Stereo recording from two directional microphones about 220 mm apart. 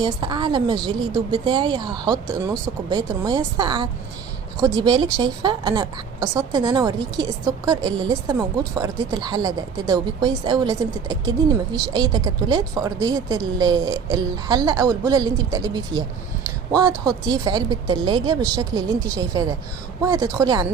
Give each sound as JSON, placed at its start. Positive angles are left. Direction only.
{"t": 0.0, "sound": "a woman's voice", "side_deg": -20}
{"t": 17.1, "sound": "a woman's voice", "side_deg": -20}